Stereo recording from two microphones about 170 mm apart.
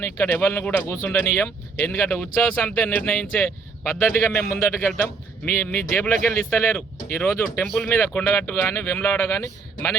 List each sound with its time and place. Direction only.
0.0 s speech: 15° left (ahead or behind)